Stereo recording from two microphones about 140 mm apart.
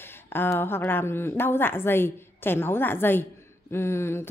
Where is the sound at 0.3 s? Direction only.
15° left (ahead or behind).